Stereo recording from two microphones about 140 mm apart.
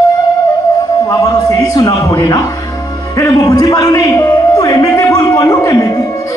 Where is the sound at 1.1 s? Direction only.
25° left (ahead or behind).